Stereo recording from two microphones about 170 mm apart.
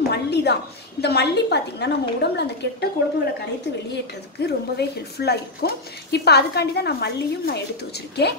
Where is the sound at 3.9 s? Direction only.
75° left (ahead or behind).